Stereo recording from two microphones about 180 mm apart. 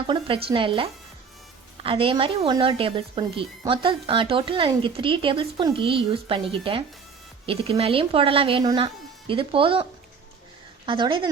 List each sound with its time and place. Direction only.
0.1 s speech: 30° right (ahead or behind)
10.8 s speech: 25° right (ahead or behind)